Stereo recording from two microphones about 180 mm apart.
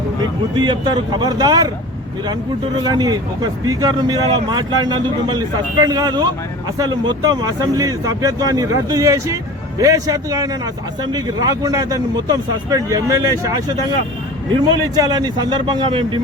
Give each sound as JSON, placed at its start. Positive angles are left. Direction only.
{"t": 0.2, "sound": "speech", "side_deg": -25}
{"t": 2.8, "sound": "speech", "side_deg": -20}
{"t": 14.7, "sound": "speech", "side_deg": -20}